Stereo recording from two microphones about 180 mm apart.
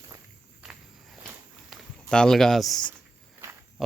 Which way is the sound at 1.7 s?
5° left (ahead or behind).